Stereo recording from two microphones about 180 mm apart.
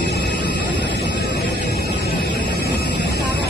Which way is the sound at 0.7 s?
70° left (ahead or behind).